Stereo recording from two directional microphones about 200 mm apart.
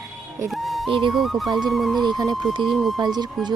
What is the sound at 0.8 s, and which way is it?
Speech, 25° right (ahead or behind).